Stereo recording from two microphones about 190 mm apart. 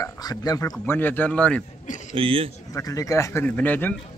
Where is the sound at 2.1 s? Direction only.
30° right (ahead or behind).